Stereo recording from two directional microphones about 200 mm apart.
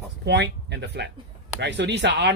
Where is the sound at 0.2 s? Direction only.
60° right (ahead or behind).